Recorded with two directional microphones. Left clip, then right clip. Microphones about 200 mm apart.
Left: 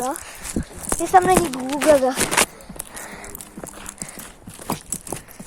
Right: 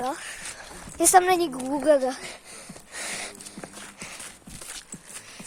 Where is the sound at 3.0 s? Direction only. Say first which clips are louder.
Right 5 dB; 40° right (ahead or behind).